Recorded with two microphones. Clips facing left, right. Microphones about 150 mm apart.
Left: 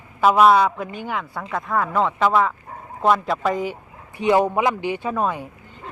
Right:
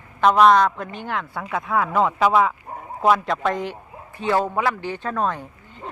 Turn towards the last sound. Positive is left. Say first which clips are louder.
# left 1 dB
turn(degrees=10)  # may be behind; listen again after turning